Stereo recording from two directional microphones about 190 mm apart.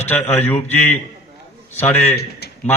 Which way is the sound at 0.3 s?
10° left (ahead or behind).